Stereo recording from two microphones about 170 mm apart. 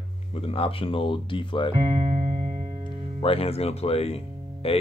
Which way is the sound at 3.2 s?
35° left (ahead or behind).